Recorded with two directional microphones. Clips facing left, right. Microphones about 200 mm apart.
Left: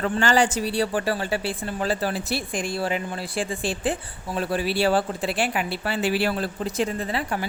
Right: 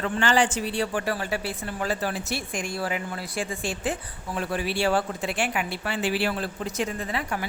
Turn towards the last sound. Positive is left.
turn(degrees=30)  # may be behind; listen again after turning